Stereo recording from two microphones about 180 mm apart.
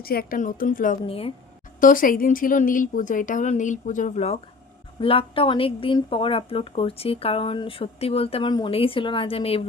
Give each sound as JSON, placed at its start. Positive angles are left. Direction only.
{"t": 0.0, "sound": "speech", "side_deg": 55}
{"t": 1.0, "sound": "speech", "side_deg": 35}
{"t": 1.8, "sound": "speech", "side_deg": 50}